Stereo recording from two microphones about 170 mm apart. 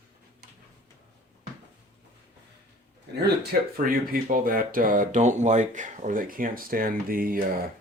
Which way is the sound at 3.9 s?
55° right (ahead or behind).